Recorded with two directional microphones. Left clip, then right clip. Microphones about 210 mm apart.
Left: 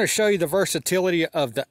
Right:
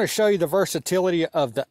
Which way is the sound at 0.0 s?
5° left (ahead or behind).